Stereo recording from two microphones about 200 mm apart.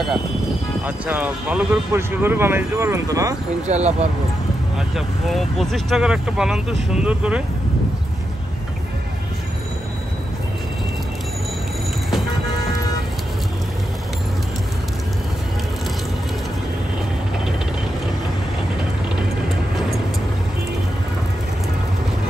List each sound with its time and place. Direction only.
0.8 s speech: 10° right (ahead or behind)
3.6 s speech: 35° right (ahead or behind)
4.7 s speech: centre (ahead or behind)